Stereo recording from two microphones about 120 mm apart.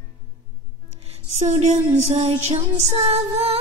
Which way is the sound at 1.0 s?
70° right (ahead or behind).